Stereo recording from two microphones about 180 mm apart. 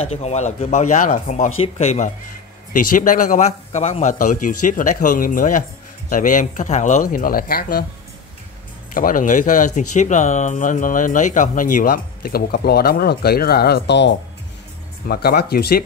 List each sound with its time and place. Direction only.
0.0 s speech: 35° left (ahead or behind); by 7.8 s 55° left (ahead or behind)
8.9 s speech: 50° left (ahead or behind); by 14.1 s 70° left (ahead or behind)
15.0 s speech: 60° left (ahead or behind)